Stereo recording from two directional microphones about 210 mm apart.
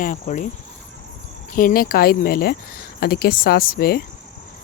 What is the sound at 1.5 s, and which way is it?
Speech, 40° left (ahead or behind).